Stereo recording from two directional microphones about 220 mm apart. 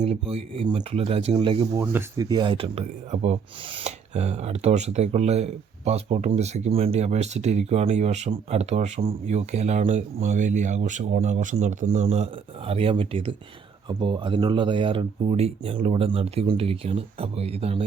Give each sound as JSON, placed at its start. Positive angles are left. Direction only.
{"t": 0.0, "sound": "speech", "side_deg": -25}
{"t": 1.8, "sound": "speech", "side_deg": -10}